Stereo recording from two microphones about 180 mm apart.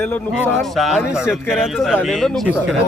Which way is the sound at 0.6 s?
Centre (ahead or behind).